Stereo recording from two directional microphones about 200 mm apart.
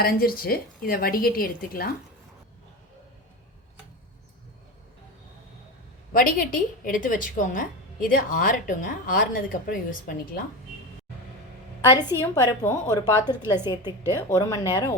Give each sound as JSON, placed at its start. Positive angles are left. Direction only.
{"t": 0.0, "sound": "a woman's voice", "side_deg": 50}
{"t": 6.1, "sound": "a woman's voice", "side_deg": 45}
{"t": 11.9, "sound": "a woman's voice", "side_deg": 20}